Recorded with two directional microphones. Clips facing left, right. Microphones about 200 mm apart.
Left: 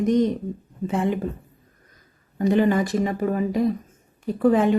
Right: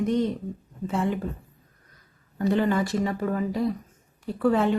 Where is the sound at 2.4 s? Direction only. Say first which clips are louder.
Left 4 dB; 15° left (ahead or behind).